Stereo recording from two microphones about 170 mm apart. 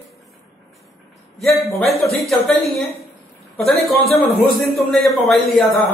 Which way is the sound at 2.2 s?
Centre (ahead or behind).